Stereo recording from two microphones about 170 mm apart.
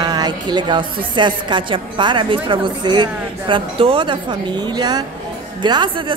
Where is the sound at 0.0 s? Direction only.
25° right (ahead or behind).